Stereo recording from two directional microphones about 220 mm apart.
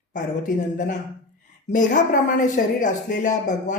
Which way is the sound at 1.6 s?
35° left (ahead or behind).